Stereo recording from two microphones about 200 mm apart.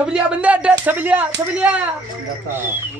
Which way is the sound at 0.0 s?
5° right (ahead or behind).